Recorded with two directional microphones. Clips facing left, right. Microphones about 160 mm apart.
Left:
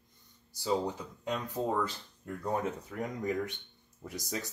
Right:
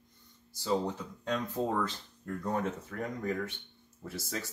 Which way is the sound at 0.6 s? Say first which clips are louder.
Even; 10° left (ahead or behind).